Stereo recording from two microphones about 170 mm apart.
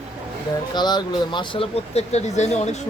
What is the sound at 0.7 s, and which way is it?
Speech, 25° left (ahead or behind).